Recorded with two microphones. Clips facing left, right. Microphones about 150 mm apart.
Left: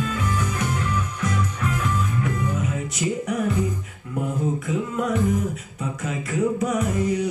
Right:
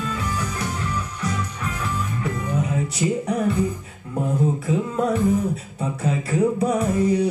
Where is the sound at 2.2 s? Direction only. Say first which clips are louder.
Even; 35° right (ahead or behind).